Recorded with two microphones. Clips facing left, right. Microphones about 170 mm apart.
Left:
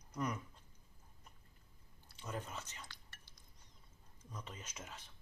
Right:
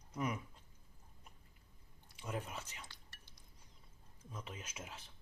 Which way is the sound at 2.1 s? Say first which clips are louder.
Right 2 dB; 10° right (ahead or behind).